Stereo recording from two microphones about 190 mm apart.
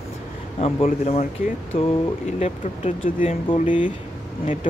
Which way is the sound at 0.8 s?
40° left (ahead or behind).